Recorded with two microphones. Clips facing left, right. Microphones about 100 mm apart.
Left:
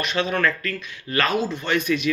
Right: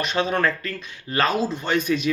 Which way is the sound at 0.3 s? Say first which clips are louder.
Even; 25° right (ahead or behind).